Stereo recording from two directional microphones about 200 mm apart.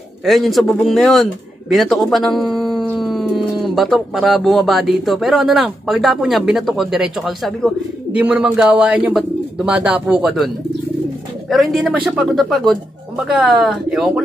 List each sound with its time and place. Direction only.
0.2 s a man's voice: centre (ahead or behind)